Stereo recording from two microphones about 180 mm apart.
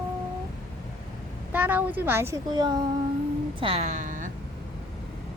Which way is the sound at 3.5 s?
30° right (ahead or behind).